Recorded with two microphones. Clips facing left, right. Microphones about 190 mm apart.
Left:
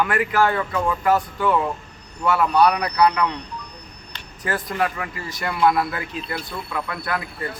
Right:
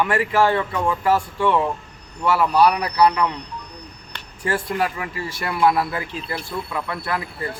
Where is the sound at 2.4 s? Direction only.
5° right (ahead or behind).